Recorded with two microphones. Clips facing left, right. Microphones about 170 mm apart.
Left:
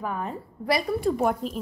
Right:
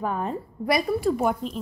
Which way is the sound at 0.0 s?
25° right (ahead or behind).